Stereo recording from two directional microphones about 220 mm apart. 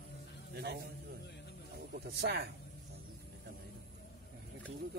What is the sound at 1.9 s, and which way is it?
Speech, 50° right (ahead or behind).